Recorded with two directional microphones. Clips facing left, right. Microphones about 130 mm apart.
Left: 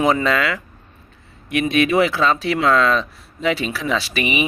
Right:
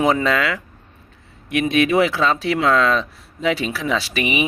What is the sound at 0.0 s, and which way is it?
Speech, 10° right (ahead or behind).